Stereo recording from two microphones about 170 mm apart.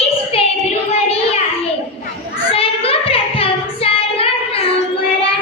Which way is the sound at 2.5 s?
35° left (ahead or behind).